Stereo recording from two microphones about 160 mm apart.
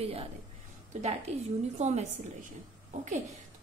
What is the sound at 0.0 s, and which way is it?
Speech, 40° right (ahead or behind).